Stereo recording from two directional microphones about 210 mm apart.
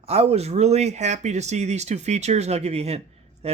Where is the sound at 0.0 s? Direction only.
30° right (ahead or behind).